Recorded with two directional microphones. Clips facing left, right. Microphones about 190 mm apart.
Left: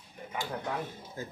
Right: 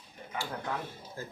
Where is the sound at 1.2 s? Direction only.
20° left (ahead or behind).